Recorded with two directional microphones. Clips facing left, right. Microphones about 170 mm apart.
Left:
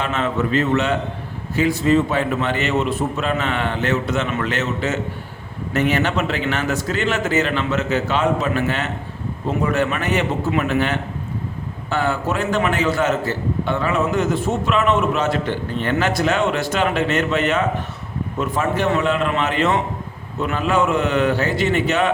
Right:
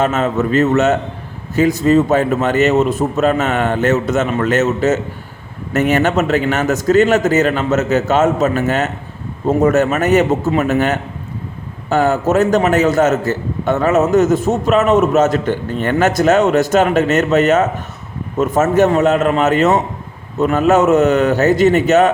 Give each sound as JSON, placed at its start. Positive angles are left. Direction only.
{"t": 0.0, "sound": "a man's voice", "side_deg": -40}